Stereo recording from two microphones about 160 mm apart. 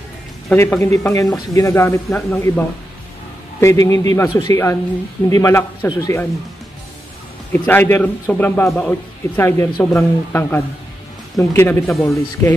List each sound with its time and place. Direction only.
0.5 s a man's voice: 15° left (ahead or behind)
3.6 s a man's voice: 20° left (ahead or behind)
7.5 s a man's voice: 10° left (ahead or behind)
11.9 s speech: centre (ahead or behind)